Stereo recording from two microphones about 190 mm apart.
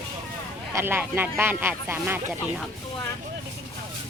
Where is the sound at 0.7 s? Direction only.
10° right (ahead or behind).